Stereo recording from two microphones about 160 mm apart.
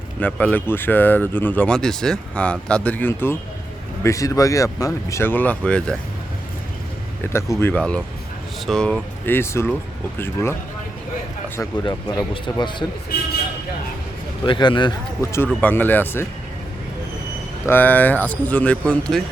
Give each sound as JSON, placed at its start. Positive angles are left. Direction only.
{"t": 0.2, "sound": "speech", "side_deg": 10}
{"t": 7.6, "sound": "speech", "side_deg": 10}
{"t": 11.8, "sound": "speech", "side_deg": 25}
{"t": 14.4, "sound": "speech", "side_deg": 30}
{"t": 15.2, "sound": "speech", "side_deg": 15}
{"t": 17.7, "sound": "speech", "side_deg": 10}